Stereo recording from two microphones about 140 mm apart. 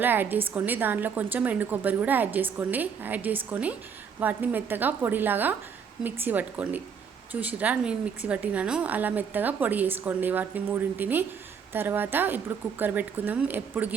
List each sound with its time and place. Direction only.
0.0 s a woman's voice: 15° right (ahead or behind)